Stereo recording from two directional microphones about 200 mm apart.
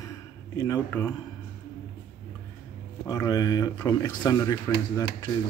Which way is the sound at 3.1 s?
20° left (ahead or behind).